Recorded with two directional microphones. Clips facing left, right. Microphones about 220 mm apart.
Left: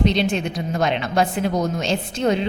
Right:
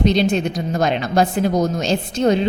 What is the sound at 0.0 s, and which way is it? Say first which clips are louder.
A woman's voice: right 3 dB; 40° right (ahead or behind).